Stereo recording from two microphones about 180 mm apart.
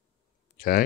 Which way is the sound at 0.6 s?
50° left (ahead or behind).